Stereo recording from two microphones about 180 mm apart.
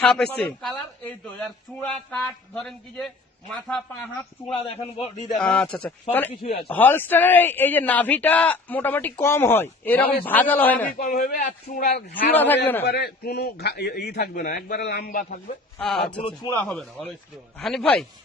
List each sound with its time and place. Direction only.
0.0 s a man's voice: 5° left (ahead or behind)
1.8 s a man's voice: 5° left (ahead or behind)
4.5 s a man's voice: 30° left (ahead or behind)
5.4 s a man's voice: 5° left (ahead or behind)
6.4 s a man's voice: 60° left (ahead or behind)
6.7 s a man's voice: 10° left (ahead or behind)
10.9 s a man's voice: 50° left (ahead or behind)
12.3 s a man's voice: 10° left (ahead or behind)
12.8 s a man's voice: 65° left (ahead or behind)
15.8 s a man's voice: 5° left (ahead or behind)